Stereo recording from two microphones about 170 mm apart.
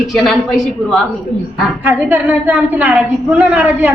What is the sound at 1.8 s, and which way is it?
A woman's voice, 10° right (ahead or behind).